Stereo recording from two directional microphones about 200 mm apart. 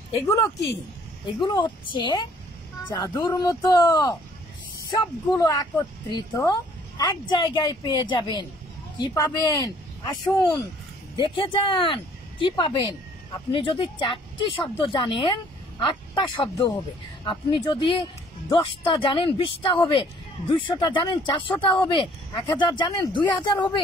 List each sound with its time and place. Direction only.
0.1 s speech: 15° left (ahead or behind)